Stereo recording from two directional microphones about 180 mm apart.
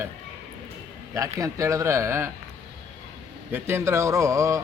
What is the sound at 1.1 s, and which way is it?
Speech, 15° right (ahead or behind).